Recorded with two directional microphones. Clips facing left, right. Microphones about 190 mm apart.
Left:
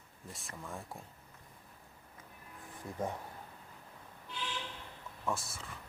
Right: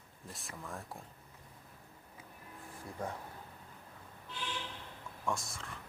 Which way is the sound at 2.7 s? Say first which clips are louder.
Left 3 dB; 15° left (ahead or behind).